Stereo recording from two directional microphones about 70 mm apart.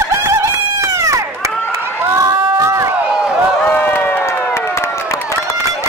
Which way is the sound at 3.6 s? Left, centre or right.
Left.